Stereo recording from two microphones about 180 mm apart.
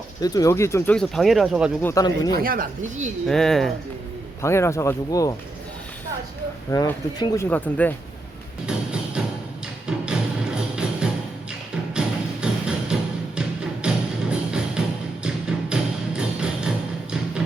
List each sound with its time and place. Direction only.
0.2 s speech: 20° left (ahead or behind)
0.9 s speech: centre (ahead or behind)
1.8 s speech: 15° left (ahead or behind)
2.4 s speech: 50° right (ahead or behind)
3.2 s speech: centre (ahead or behind)
4.4 s speech: 15° left (ahead or behind)
6.7 s speech: 20° left (ahead or behind)
8.6 s music: 5° right (ahead or behind)